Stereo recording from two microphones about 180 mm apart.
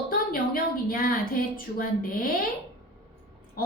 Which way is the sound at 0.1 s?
50° left (ahead or behind).